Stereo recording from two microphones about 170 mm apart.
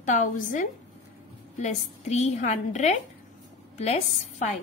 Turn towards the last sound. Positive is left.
turn(degrees=40)  # may be behind; listen again after turning